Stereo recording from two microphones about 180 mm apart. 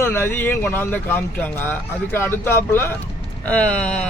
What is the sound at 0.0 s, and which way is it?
Speech, 10° left (ahead or behind).